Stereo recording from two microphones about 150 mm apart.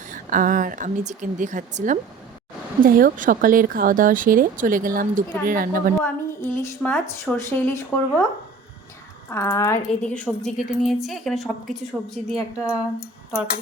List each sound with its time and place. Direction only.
0.1 s a woman's voice: 60° right (ahead or behind)
2.8 s a woman's voice: 70° right (ahead or behind)
6.0 s speech: 15° left (ahead or behind)
9.3 s speech: 15° left (ahead or behind)
10.2 s speech: 5° right (ahead or behind)